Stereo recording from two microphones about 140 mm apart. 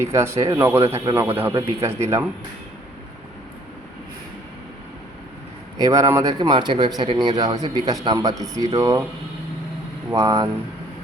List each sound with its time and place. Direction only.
0.0 s speech: 20° right (ahead or behind)
5.7 s speech: 25° right (ahead or behind)
10.1 s speech: 25° right (ahead or behind)